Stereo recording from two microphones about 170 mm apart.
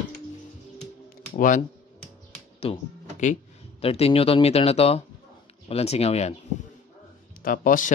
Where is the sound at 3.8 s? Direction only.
35° left (ahead or behind).